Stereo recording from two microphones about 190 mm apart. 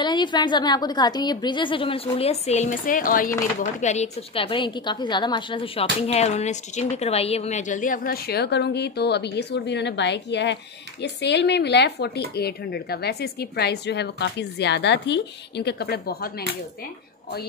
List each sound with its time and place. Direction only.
0.0 s a woman's voice: 25° left (ahead or behind); by 16.4 s 55° left (ahead or behind)